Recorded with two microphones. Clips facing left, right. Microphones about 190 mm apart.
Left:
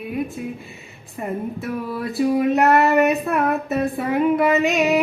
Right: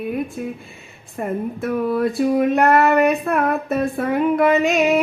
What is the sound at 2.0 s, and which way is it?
Child singing, centre (ahead or behind).